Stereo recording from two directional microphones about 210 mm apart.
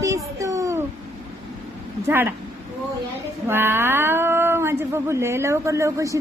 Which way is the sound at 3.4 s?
10° right (ahead or behind).